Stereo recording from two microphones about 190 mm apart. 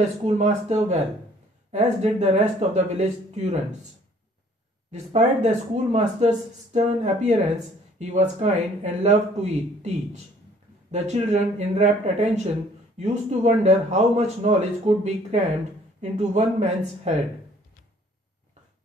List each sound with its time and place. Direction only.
0.2 s speech: 35° right (ahead or behind)
4.9 s speech: 35° right (ahead or behind)